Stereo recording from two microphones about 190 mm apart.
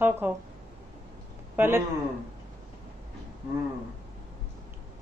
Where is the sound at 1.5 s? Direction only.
10° right (ahead or behind).